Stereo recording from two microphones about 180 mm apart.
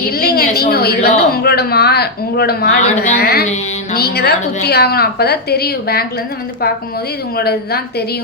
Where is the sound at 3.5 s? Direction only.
40° left (ahead or behind).